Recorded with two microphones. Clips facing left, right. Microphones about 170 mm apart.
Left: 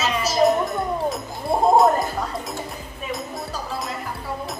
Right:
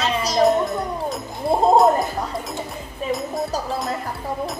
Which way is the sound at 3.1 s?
Centre (ahead or behind).